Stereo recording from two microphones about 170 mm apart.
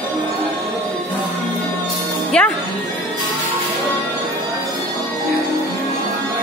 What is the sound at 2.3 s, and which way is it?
Music, 5° left (ahead or behind).